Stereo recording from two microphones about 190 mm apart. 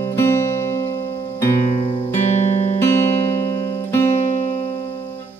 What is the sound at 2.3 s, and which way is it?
Music, 35° left (ahead or behind).